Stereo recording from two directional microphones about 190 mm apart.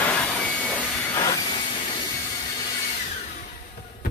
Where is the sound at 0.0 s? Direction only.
5° left (ahead or behind).